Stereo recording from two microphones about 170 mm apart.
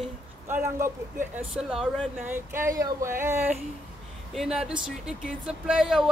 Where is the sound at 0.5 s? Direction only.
15° right (ahead or behind).